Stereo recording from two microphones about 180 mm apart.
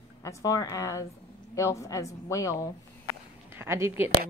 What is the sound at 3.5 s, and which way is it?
Speech, 15° right (ahead or behind).